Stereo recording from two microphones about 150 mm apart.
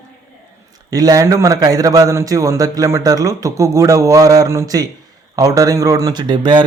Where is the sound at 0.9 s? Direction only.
25° right (ahead or behind).